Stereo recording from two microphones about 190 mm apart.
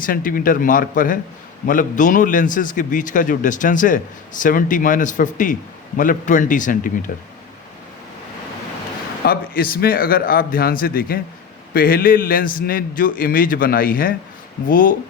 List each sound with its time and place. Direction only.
0.0 s a man's voice: 45° left (ahead or behind)
9.2 s a man's voice: 50° left (ahead or behind)